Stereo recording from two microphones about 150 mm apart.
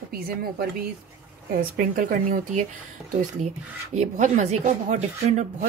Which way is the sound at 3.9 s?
55° right (ahead or behind).